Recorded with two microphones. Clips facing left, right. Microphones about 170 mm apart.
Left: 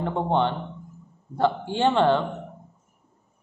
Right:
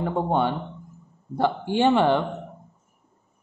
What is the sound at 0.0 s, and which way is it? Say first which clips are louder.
Speech: even; 10° right (ahead or behind).